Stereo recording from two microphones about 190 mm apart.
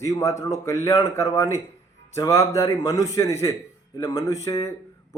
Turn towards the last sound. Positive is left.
turn(degrees=15)  # may be behind; listen again after turning